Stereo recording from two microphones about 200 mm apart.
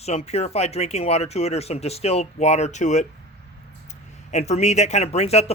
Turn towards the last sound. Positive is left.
turn(degrees=30)  # may be behind; listen again after turning